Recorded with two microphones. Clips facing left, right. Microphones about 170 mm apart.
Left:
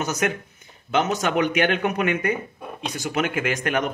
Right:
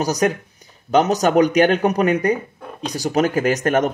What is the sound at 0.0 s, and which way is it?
Speech, 35° right (ahead or behind).